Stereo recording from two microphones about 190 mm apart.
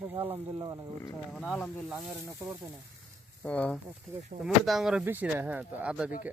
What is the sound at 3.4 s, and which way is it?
Speech, 5° left (ahead or behind).